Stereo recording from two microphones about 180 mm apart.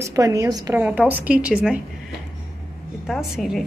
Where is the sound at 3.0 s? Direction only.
Centre (ahead or behind).